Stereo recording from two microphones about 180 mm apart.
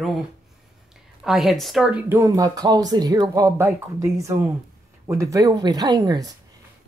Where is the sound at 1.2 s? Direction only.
Centre (ahead or behind).